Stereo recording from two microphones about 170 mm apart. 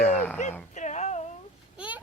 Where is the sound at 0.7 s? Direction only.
45° left (ahead or behind).